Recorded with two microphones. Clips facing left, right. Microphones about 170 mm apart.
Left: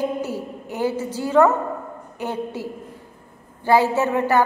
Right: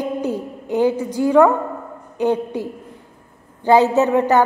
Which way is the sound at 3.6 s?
20° right (ahead or behind).